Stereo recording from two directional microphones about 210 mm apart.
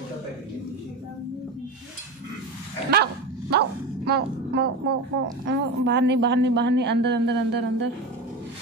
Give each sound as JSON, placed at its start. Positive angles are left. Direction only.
{"t": 2.9, "sound": "dog", "side_deg": -50}
{"t": 5.5, "sound": "a woman's voice", "side_deg": -55}